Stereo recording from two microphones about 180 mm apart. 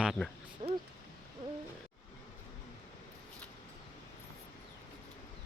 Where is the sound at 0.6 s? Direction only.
40° right (ahead or behind).